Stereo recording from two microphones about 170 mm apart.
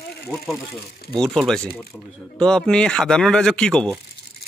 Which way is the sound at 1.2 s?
5° left (ahead or behind).